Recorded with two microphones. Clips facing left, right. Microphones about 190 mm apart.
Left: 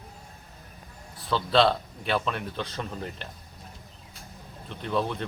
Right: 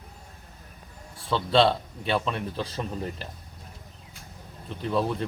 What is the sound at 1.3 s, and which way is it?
Speech, centre (ahead or behind).